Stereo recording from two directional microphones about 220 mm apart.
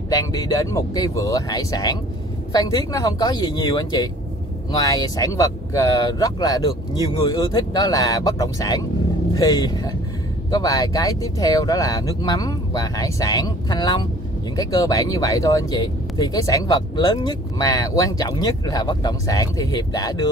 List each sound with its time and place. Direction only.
0.7 s speech: 15° left (ahead or behind)